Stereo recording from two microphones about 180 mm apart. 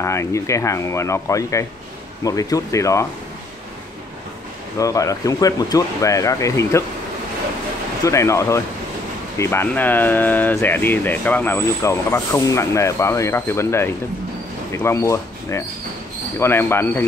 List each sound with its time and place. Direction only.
0.0 s speech: 15° left (ahead or behind)
4.7 s speech: 20° left (ahead or behind)
8.0 s speech: 15° left (ahead or behind)